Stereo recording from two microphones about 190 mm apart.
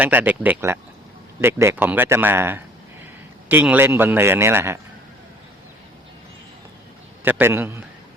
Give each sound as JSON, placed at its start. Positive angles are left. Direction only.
{"t": 0.0, "sound": "speech", "side_deg": -10}
{"t": 7.3, "sound": "speech", "side_deg": -10}